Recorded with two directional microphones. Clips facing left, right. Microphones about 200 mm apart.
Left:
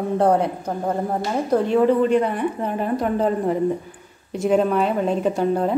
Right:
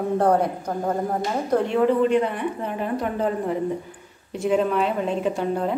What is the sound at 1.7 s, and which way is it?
A woman's voice, 40° left (ahead or behind).